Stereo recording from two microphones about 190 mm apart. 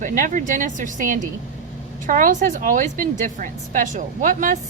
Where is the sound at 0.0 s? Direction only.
45° right (ahead or behind).